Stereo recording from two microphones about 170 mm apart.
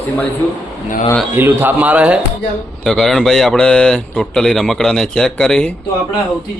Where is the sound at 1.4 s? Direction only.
10° right (ahead or behind); by 5.7 s 5° left (ahead or behind).